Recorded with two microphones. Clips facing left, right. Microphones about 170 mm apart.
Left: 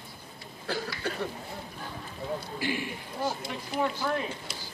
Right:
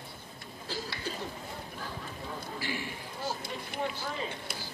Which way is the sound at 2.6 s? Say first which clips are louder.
Left 5 dB; 15° left (ahead or behind).